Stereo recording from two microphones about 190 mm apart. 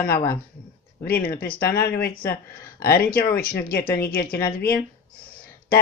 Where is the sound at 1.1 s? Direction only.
50° left (ahead or behind).